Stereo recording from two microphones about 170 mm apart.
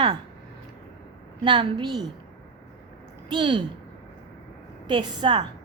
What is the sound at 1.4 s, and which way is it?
Speech, 30° right (ahead or behind).